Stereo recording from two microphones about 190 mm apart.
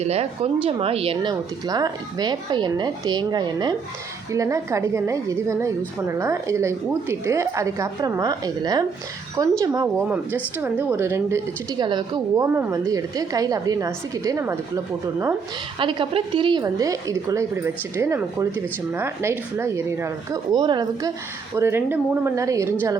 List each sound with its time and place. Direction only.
0.0 s speech: 35° right (ahead or behind); by 14.6 s 15° right (ahead or behind)
15.8 s speech: 25° right (ahead or behind)